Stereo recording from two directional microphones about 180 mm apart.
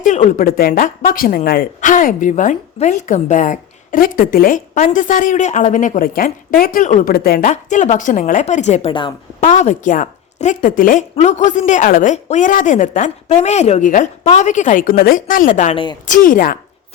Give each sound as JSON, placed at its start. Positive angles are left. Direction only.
{"t": 0.0, "sound": "speech", "side_deg": 45}
{"t": 8.9, "sound": "a woman's voice", "side_deg": 25}
{"t": 9.4, "sound": "a woman's voice", "side_deg": 40}